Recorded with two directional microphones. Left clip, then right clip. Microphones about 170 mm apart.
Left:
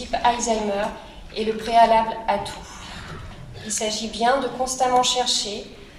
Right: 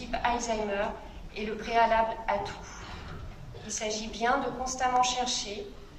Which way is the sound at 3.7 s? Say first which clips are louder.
Left 8 dB; 30° left (ahead or behind).